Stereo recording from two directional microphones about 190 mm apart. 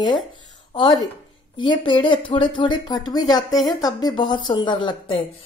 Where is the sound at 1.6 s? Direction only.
25° left (ahead or behind).